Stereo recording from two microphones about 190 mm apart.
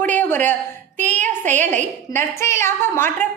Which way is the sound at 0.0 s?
10° left (ahead or behind).